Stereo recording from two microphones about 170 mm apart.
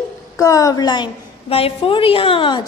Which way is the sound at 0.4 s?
20° left (ahead or behind).